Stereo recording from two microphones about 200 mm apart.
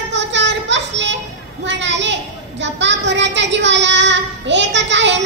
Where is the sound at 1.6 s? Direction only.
65° right (ahead or behind).